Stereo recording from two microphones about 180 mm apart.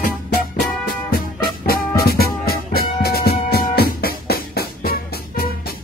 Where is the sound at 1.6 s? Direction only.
55° left (ahead or behind).